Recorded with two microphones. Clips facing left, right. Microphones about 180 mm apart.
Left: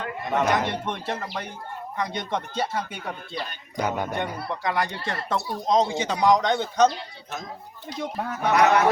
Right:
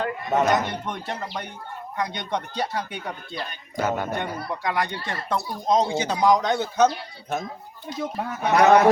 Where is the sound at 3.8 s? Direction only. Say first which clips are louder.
Right 1 dB; 15° left (ahead or behind).